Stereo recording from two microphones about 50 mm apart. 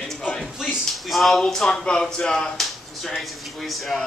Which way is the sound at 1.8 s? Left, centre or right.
Centre.